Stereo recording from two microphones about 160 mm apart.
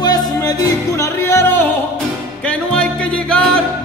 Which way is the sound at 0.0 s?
25° left (ahead or behind).